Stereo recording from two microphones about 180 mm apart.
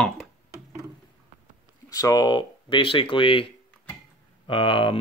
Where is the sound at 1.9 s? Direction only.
20° left (ahead or behind).